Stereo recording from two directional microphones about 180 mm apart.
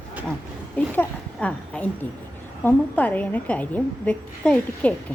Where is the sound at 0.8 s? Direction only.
5° left (ahead or behind).